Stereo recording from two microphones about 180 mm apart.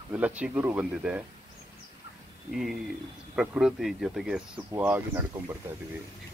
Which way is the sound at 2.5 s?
Centre (ahead or behind).